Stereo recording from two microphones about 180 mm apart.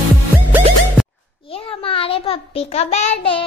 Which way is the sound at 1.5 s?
30° left (ahead or behind).